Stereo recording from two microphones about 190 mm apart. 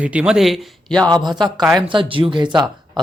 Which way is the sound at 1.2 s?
20° right (ahead or behind).